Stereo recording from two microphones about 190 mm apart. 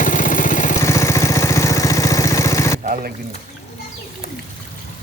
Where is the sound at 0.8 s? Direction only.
15° left (ahead or behind).